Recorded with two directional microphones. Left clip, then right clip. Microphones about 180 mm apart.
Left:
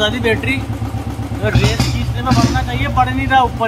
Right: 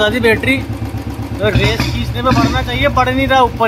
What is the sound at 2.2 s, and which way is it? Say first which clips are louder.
Speech: right 3 dB; 40° right (ahead or behind).